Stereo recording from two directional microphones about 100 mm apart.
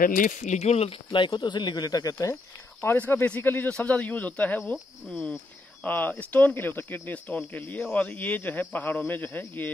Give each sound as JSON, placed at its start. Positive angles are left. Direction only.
{"t": 0.6, "sound": "speech", "side_deg": 90}
{"t": 1.2, "sound": "speech", "side_deg": 50}
{"t": 2.8, "sound": "speech", "side_deg": 20}